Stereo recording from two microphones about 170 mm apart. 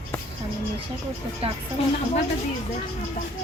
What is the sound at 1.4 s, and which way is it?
Speech, 35° right (ahead or behind).